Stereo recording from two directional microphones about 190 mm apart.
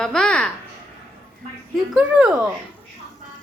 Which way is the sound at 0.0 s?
5° left (ahead or behind).